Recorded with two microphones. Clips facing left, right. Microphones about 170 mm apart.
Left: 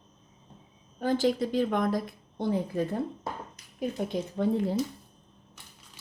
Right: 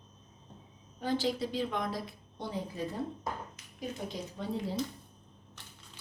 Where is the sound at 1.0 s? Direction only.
50° left (ahead or behind).